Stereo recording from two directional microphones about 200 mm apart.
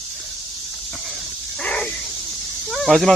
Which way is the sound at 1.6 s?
5° left (ahead or behind).